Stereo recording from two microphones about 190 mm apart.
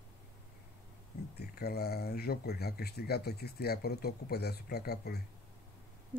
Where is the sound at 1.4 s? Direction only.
55° left (ahead or behind).